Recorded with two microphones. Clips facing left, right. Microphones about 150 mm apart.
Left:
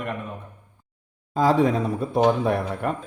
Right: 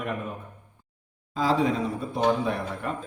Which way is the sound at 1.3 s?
50° left (ahead or behind).